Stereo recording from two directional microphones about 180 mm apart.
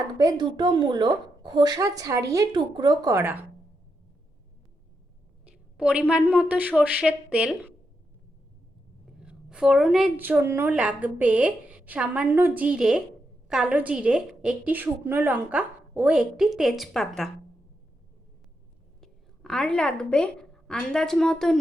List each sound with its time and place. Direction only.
0.2 s a woman's voice: 25° right (ahead or behind)
5.5 s a woman's voice: 5° right (ahead or behind)
9.2 s a woman's voice: 5° right (ahead or behind)
18.9 s a woman's voice: centre (ahead or behind)